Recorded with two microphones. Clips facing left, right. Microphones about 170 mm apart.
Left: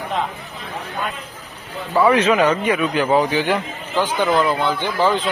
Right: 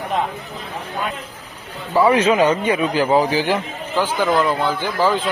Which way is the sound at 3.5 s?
5° right (ahead or behind).